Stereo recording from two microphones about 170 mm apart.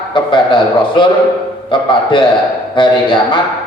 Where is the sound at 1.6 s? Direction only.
30° left (ahead or behind).